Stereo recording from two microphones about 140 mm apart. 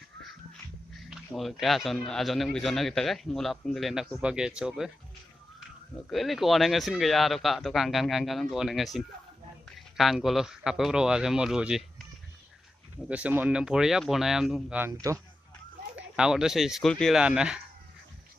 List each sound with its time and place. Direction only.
0.2 s speech: centre (ahead or behind)
6.0 s speech: centre (ahead or behind)
13.1 s speech: 10° right (ahead or behind)
14.8 s speech: 20° right (ahead or behind)
16.0 s speech: 5° right (ahead or behind)